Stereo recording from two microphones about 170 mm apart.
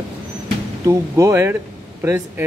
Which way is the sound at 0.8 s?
20° right (ahead or behind).